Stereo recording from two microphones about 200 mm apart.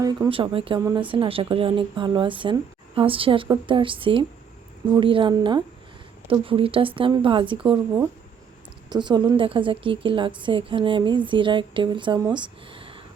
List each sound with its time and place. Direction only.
0.0 s speech: 20° right (ahead or behind)